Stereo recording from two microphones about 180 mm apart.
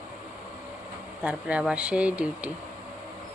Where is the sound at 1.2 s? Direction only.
5° right (ahead or behind).